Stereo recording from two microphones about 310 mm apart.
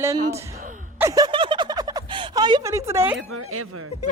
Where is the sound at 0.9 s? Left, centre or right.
Centre.